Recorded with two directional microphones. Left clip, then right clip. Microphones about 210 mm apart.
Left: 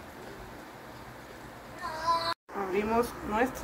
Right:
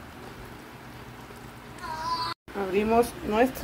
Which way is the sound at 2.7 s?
20° right (ahead or behind).